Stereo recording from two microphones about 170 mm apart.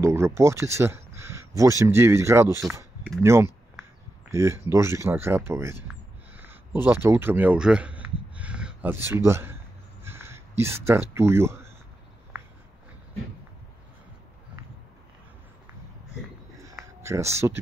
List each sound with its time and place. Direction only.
0.0 s speech: 15° right (ahead or behind)
6.3 s a sound: 10° right (ahead or behind)
17.0 s speech: 15° right (ahead or behind)